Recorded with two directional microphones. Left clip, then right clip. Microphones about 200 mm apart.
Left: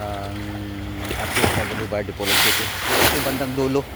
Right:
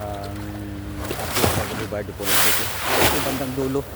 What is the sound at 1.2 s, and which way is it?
Boat, 10° right (ahead or behind).